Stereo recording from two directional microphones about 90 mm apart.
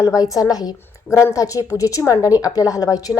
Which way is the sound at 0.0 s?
40° left (ahead or behind).